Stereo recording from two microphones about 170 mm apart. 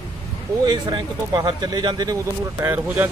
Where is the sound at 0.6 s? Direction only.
25° right (ahead or behind).